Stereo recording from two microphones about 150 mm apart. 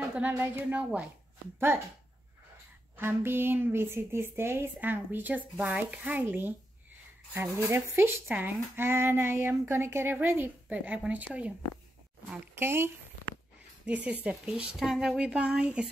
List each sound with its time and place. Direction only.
0.3 s speech: 15° right (ahead or behind)
3.0 s speech: 15° right (ahead or behind)
7.6 s speech: 15° right (ahead or behind)